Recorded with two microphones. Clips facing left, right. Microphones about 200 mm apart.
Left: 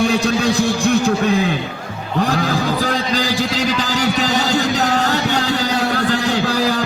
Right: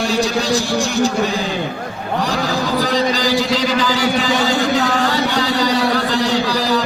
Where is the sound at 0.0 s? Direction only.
60° left (ahead or behind).